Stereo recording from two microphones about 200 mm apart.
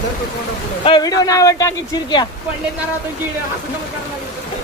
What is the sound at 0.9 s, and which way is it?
Speech, 20° left (ahead or behind).